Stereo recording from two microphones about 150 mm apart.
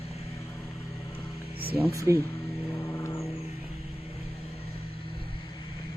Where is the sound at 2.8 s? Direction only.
20° left (ahead or behind).